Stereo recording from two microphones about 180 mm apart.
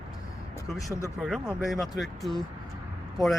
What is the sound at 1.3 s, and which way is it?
Speech, centre (ahead or behind).